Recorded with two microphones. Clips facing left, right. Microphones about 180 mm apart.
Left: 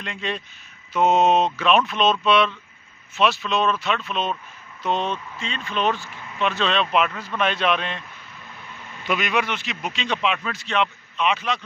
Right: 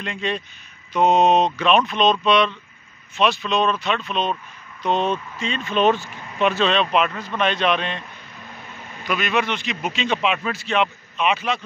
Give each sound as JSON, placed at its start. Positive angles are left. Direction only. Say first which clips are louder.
{"t": 0.0, "sound": "a man's voice", "louder": "right 3 dB", "side_deg": 0}
{"t": 5.1, "sound": "speech", "louder": "right 5 dB", "side_deg": -15}
{"t": 6.5, "sound": "a man's voice", "louder": "even", "side_deg": 0}
{"t": 9.0, "sound": "a man's voice", "louder": "right 1 dB", "side_deg": 15}